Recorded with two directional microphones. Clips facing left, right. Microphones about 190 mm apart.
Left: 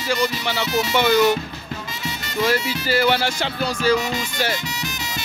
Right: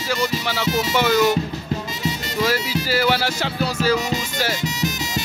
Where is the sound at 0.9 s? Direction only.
5° right (ahead or behind).